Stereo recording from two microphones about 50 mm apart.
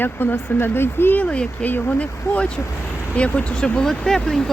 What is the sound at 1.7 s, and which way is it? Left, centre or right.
Speech, left.